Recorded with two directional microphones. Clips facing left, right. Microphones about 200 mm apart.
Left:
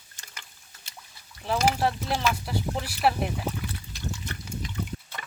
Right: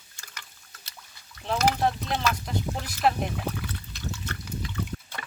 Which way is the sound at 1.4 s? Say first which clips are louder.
Even; 5° left (ahead or behind).